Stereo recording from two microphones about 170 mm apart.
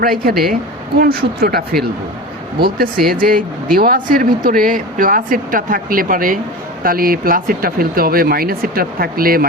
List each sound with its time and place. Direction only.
0.0 s speech: 60° right (ahead or behind)